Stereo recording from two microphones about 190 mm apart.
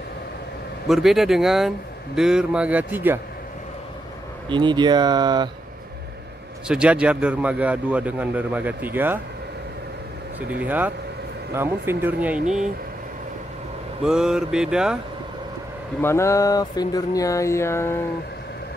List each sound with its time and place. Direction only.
0.8 s mantra: centre (ahead or behind)
2.1 s a man's voice: 5° right (ahead or behind)
4.5 s speech: 25° right (ahead or behind)
6.7 s a man's voice: 5° right (ahead or behind)
10.5 s a man's voice: 10° right (ahead or behind)
14.0 s mantra: 5° right (ahead or behind)
16.0 s speech: 15° left (ahead or behind)